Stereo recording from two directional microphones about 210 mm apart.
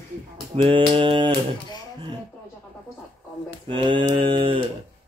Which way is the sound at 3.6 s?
25° right (ahead or behind).